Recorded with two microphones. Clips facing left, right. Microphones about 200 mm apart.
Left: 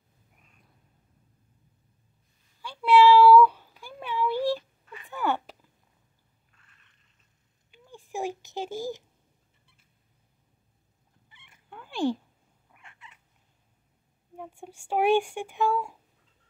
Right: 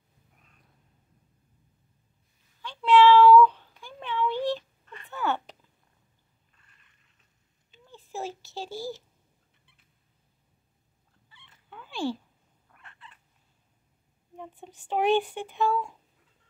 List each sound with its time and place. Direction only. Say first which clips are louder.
2.6 s meow: even; 10° left (ahead or behind)
7.7 s a sound: left 2 dB; 10° left (ahead or behind)
11.2 s cat: left 1 dB; 15° left (ahead or behind)
14.3 s speech: left 2 dB; 10° left (ahead or behind)